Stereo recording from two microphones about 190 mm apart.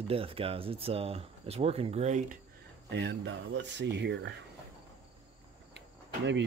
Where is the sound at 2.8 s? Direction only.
65° right (ahead or behind).